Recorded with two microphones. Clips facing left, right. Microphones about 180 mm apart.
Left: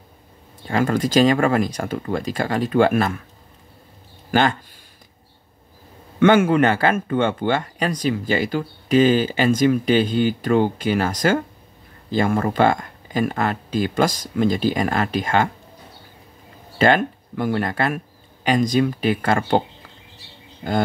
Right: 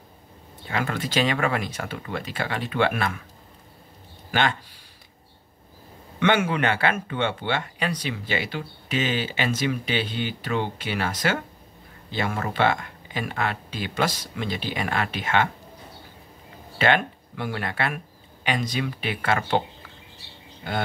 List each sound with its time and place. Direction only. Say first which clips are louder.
0.7 s speech: left 8 dB; 40° left (ahead or behind)
4.3 s speech: left 6 dB; 45° left (ahead or behind)
6.1 s speech: left 8 dB; 45° left (ahead or behind)
16.7 s speech: left 5 dB; 40° left (ahead or behind)